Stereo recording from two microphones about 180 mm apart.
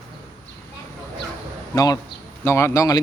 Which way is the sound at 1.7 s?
20° left (ahead or behind).